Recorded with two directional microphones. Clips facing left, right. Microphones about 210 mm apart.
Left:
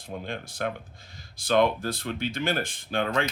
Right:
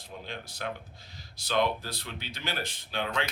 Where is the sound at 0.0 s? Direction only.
50° left (ahead or behind).